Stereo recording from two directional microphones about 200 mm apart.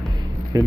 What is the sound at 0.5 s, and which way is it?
Speech, 20° right (ahead or behind).